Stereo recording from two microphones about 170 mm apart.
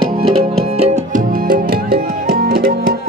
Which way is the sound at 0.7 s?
40° right (ahead or behind).